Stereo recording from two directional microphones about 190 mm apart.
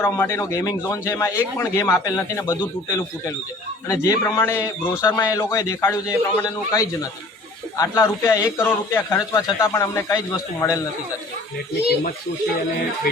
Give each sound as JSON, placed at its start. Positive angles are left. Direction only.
{"t": 0.0, "sound": "a man's voice", "side_deg": 15}